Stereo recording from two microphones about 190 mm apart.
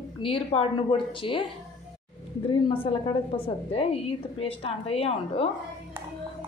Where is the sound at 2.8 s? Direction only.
30° left (ahead or behind).